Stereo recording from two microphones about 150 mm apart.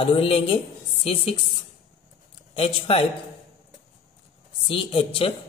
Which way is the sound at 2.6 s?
40° left (ahead or behind).